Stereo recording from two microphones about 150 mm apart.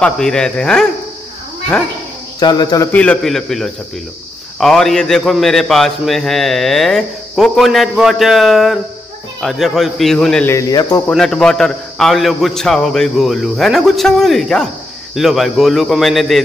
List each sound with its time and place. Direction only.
0.0 s a man's voice: 5° left (ahead or behind)
2.4 s speech: 30° left (ahead or behind)
2.9 s a man's voice: 10° left (ahead or behind)
10.5 s speech: 25° left (ahead or behind)
11.1 s a man's voice: 5° left (ahead or behind)